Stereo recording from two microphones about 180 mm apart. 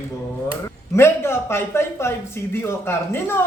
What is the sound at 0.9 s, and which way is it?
A woman's voice, 15° left (ahead or behind).